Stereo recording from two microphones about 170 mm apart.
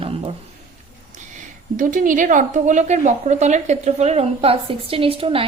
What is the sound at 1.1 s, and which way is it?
A woman's voice, 45° right (ahead or behind).